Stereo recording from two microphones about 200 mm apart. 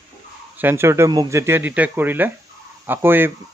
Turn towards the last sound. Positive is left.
turn(degrees=-10)  # may be behind; listen again after turning